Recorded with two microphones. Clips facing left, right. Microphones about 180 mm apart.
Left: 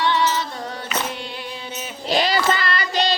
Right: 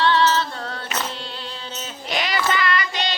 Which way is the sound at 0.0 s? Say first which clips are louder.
Right 2 dB; 15° left (ahead or behind).